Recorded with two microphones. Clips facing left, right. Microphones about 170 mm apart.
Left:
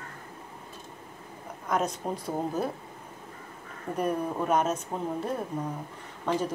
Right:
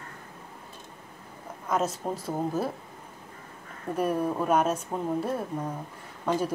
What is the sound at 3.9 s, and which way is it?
Speech, 5° right (ahead or behind).